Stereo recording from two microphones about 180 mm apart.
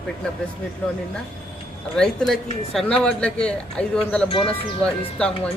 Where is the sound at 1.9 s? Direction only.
5° left (ahead or behind).